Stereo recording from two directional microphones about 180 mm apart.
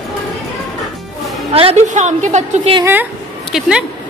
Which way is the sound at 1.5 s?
35° right (ahead or behind).